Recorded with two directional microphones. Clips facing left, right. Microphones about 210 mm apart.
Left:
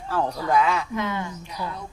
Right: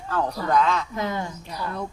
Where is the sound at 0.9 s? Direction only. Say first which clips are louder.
Even; 35° right (ahead or behind).